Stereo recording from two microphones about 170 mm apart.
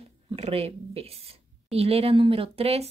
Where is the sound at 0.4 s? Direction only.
35° right (ahead or behind).